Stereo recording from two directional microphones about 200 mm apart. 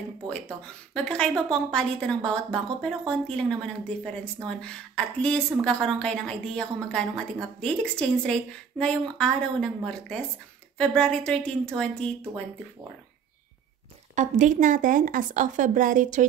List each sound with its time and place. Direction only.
0.3 s a woman's voice: 5° left (ahead or behind)
14.1 s speech: 35° right (ahead or behind)